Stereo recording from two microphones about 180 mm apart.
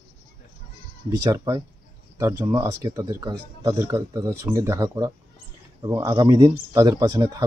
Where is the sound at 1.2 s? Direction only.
20° right (ahead or behind).